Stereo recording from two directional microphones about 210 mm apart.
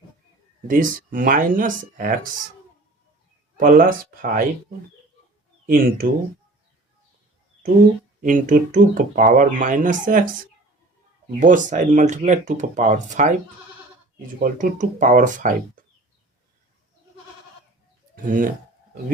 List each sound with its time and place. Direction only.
0.7 s speech: 40° right (ahead or behind)
3.6 s speech: 40° right (ahead or behind)
5.6 s speech: 40° right (ahead or behind)
8.2 s speech: 40° right (ahead or behind)
11.3 s speech: 35° right (ahead or behind)
14.4 s speech: 40° right (ahead or behind)
18.1 s speech: 40° right (ahead or behind)